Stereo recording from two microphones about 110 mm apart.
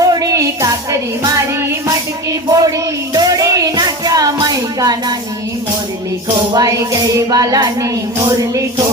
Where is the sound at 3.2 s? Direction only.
30° right (ahead or behind).